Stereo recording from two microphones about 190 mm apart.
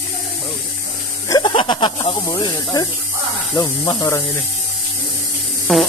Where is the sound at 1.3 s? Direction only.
25° left (ahead or behind).